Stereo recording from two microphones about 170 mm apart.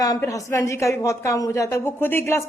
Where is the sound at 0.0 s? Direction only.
20° left (ahead or behind).